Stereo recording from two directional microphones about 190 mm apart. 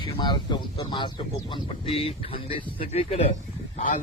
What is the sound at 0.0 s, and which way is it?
Speech, 25° left (ahead or behind).